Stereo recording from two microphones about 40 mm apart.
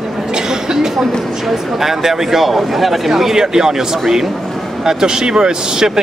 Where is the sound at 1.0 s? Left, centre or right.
Centre.